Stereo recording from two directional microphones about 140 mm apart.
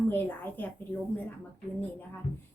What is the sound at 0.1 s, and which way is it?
Speech, 15° left (ahead or behind).